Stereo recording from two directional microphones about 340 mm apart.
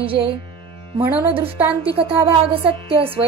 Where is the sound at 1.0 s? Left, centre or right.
Centre.